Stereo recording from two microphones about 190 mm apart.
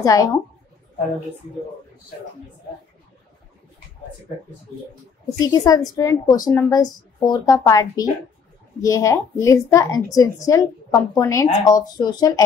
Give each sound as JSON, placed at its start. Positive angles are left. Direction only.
{"t": 0.0, "sound": "a woman's voice", "side_deg": 20}
{"t": 5.4, "sound": "a woman's voice", "side_deg": 20}